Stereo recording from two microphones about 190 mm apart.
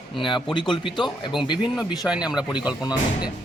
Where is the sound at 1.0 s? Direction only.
Centre (ahead or behind).